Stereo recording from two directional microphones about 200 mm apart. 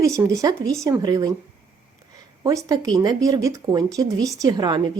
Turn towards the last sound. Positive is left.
turn(degrees=-20)  # may be behind; listen again after turning